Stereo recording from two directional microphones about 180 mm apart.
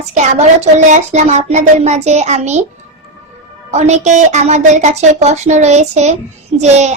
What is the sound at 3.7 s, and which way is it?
A woman's voice, 40° right (ahead or behind).